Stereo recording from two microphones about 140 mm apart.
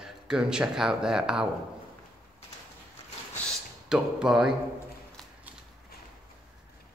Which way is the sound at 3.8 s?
5° right (ahead or behind).